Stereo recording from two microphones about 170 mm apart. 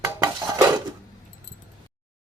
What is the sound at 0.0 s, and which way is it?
Dishes, 20° right (ahead or behind).